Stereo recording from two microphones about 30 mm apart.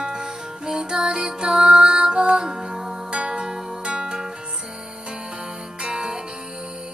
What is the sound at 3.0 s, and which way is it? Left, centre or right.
Music, right.